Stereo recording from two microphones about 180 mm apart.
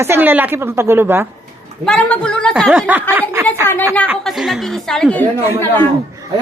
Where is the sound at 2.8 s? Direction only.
10° right (ahead or behind).